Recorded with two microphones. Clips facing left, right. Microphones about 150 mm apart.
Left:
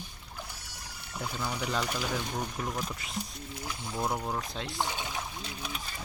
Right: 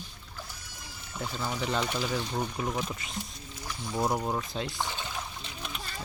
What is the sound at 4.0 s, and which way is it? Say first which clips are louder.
Speech: right 4 dB; 15° right (ahead or behind).